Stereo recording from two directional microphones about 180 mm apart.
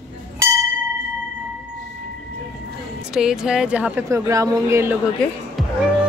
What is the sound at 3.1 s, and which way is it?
A woman's voice, 5° right (ahead or behind).